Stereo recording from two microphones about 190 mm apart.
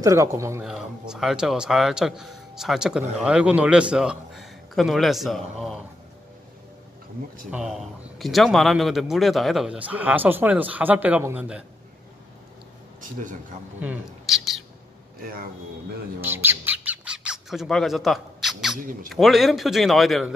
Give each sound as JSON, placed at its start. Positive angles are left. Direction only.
{"t": 0.0, "sound": "speech", "side_deg": -15}
{"t": 0.7, "sound": "speech", "side_deg": 0}
{"t": 7.5, "sound": "speech", "side_deg": -5}
{"t": 13.7, "sound": "speech", "side_deg": -5}
{"t": 16.2, "sound": "squawk", "side_deg": -10}
{"t": 19.1, "sound": "speech", "side_deg": 0}